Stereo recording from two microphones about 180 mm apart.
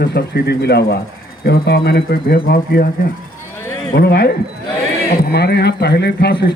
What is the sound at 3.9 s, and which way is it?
Speech, 65° left (ahead or behind).